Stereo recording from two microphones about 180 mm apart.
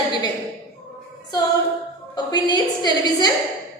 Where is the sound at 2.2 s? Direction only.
25° left (ahead or behind).